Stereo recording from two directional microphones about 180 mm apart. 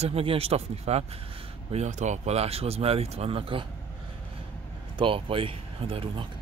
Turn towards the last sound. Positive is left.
turn(degrees=-30)  # may be behind; listen again after turning